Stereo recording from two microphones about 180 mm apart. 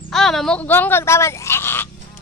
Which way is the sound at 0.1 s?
Centre (ahead or behind).